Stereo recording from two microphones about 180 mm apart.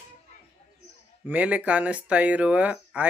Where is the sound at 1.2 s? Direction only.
10° right (ahead or behind).